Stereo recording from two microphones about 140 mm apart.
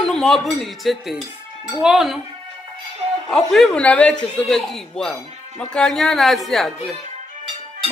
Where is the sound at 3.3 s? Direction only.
Centre (ahead or behind).